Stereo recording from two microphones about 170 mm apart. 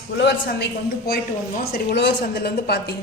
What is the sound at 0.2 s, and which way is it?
A woman's voice, 80° left.